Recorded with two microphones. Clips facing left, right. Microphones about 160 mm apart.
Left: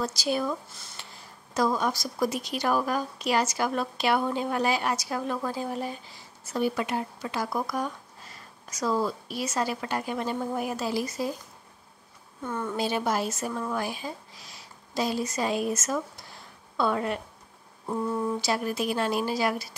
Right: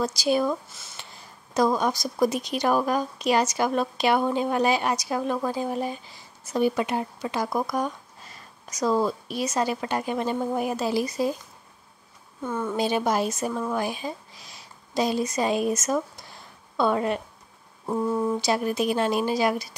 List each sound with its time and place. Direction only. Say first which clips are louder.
0.0 s a woman's voice: right 5 dB; 15° right (ahead or behind)
12.6 s a woman's voice: right 3 dB; 20° right (ahead or behind)